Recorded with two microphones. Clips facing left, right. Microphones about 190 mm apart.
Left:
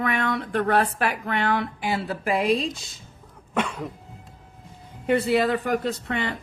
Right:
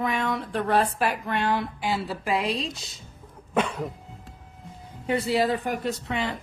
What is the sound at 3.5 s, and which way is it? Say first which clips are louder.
Cough: right 1 dB; 5° right (ahead or behind).